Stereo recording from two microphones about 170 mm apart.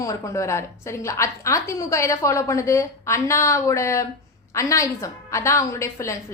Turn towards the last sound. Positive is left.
turn(degrees=15)  # may be behind; listen again after turning